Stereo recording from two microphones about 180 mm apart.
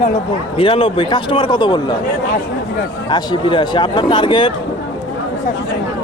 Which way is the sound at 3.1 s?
25° left (ahead or behind).